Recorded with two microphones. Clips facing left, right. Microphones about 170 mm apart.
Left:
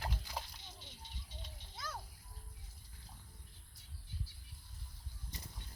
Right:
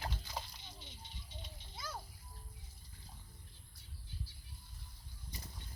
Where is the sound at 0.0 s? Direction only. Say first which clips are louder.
Even; 5° left (ahead or behind).